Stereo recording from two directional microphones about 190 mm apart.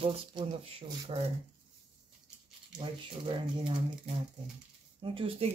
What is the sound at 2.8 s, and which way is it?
Speech, 25° right (ahead or behind).